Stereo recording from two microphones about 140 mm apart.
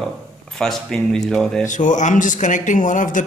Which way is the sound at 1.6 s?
65° left (ahead or behind).